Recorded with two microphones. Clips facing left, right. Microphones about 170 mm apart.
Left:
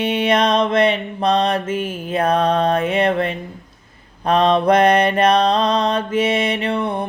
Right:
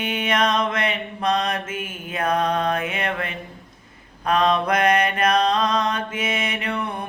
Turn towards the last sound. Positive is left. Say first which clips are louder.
# left 6 dB
turn(degrees=30)  # may be behind; listen again after turning